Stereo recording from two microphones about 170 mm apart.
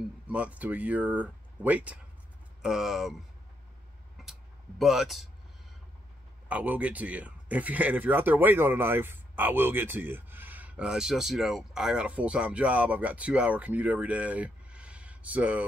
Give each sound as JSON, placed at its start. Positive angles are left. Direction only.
{"t": 0.3, "sound": "speech", "side_deg": -10}
{"t": 4.2, "sound": "a sound", "side_deg": 0}
{"t": 6.5, "sound": "speech", "side_deg": -10}